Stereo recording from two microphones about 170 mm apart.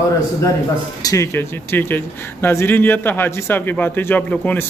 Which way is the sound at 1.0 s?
15° left (ahead or behind).